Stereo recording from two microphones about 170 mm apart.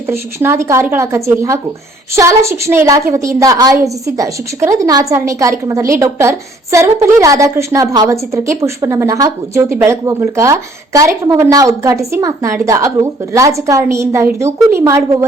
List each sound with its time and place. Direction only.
0.1 s a woman's voice: 15° right (ahead or behind)